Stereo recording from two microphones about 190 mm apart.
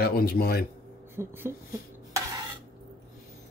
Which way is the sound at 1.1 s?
10° right (ahead or behind).